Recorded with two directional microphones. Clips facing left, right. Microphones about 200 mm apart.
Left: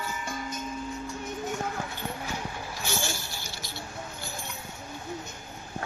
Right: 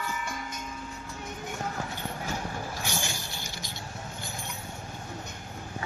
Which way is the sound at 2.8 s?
15° right (ahead or behind).